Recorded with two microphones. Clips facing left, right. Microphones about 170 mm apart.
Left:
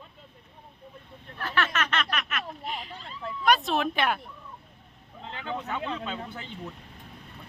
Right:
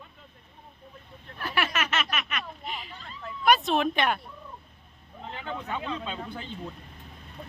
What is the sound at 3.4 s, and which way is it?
Speech, centre (ahead or behind).